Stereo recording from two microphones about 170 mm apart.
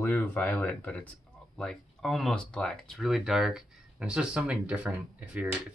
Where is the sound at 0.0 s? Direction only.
10° left (ahead or behind).